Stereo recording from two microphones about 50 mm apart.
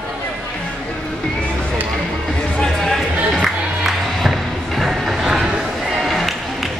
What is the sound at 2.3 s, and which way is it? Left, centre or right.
Music, left.